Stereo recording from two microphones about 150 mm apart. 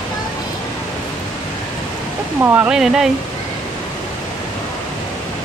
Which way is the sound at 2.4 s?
10° right (ahead or behind).